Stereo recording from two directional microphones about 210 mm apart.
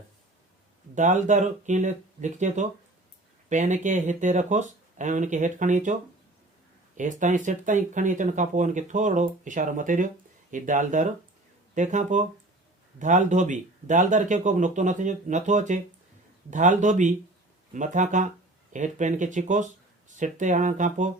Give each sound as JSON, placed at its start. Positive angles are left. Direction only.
{"t": 0.9, "sound": "speech", "side_deg": -35}